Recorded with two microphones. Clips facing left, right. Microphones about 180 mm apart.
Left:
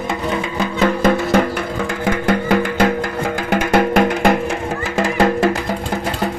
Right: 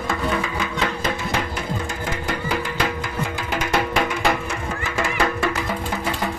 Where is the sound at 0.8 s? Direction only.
50° left (ahead or behind).